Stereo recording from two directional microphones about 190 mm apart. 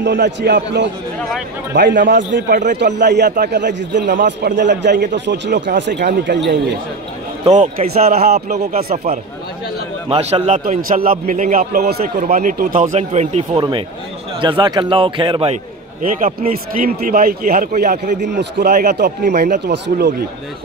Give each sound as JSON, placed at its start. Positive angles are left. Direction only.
{"t": 0.0, "sound": "a man's voice", "side_deg": -65}
{"t": 2.5, "sound": "a man's voice", "side_deg": -45}
{"t": 2.8, "sound": "a man's voice", "side_deg": -65}
{"t": 7.4, "sound": "a man's voice", "side_deg": -35}
{"t": 8.0, "sound": "a man's voice", "side_deg": -55}
{"t": 8.9, "sound": "a man's voice", "side_deg": -35}
{"t": 16.0, "sound": "a man's voice", "side_deg": -45}